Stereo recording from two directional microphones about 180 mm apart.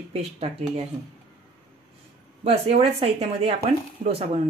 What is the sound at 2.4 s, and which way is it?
Speech, 35° right (ahead or behind).